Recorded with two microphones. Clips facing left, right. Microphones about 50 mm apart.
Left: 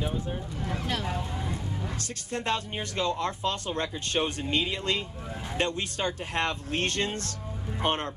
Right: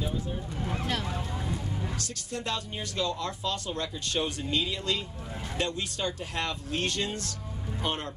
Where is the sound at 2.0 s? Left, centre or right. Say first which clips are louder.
Left 2 dB; left.